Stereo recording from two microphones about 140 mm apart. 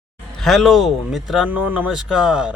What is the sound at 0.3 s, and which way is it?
Speech, centre (ahead or behind).